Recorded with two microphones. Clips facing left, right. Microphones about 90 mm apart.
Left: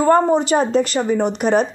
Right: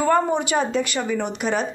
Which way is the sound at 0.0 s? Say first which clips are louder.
Left 5 dB; 35° left (ahead or behind).